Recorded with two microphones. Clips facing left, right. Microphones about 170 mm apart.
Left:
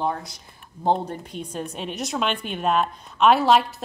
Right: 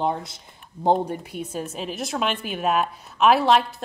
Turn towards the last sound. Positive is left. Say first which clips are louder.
# even
turn(degrees=0)  # may be behind; listen again after turning